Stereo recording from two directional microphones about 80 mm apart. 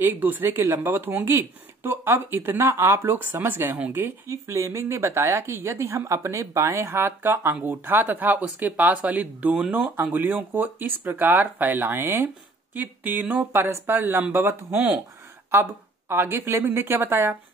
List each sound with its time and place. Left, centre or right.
0.0 s a woman's voice: right
4.3 s a woman's voice: right
14.7 s a woman's voice: centre